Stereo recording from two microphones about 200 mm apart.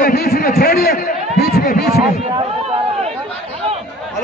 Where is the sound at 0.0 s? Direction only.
50° left (ahead or behind).